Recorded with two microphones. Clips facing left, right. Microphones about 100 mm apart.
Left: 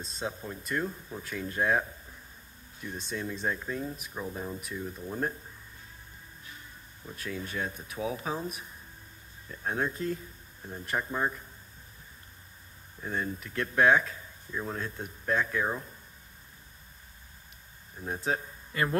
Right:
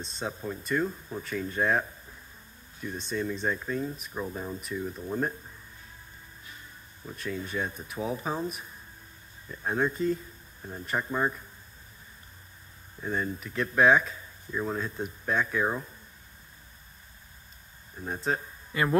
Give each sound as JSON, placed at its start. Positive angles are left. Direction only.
{"t": 0.0, "sound": "speech", "side_deg": 0}
{"t": 7.2, "sound": "speech", "side_deg": 0}
{"t": 13.0, "sound": "speech", "side_deg": 0}
{"t": 18.0, "sound": "speech", "side_deg": 5}
{"t": 18.7, "sound": "speech", "side_deg": -20}